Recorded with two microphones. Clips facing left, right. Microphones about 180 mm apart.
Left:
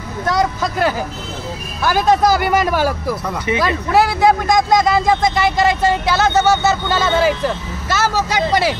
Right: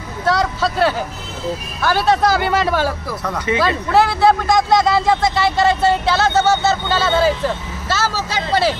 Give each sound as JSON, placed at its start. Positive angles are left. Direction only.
{"t": 0.3, "sound": "speech", "side_deg": 15}